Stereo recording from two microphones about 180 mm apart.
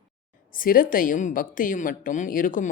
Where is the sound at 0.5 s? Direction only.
50° left (ahead or behind).